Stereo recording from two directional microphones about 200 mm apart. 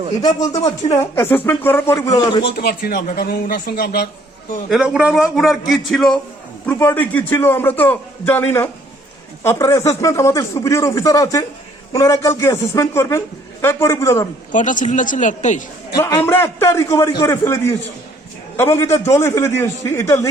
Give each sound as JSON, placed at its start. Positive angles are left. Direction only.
{"t": 0.2, "sound": "a man's voice", "side_deg": 20}
{"t": 2.4, "sound": "a man's voice", "side_deg": 50}
{"t": 4.7, "sound": "a man's voice", "side_deg": -5}
{"t": 14.5, "sound": "speech", "side_deg": 40}
{"t": 16.0, "sound": "a man's voice", "side_deg": 15}